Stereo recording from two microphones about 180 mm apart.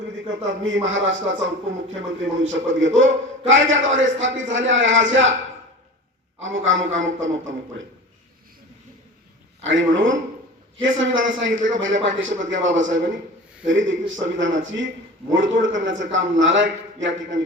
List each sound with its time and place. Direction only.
0.3 s a man's voice: 90° right
6.4 s a man's voice: 90° right
9.6 s a man's voice: 90° right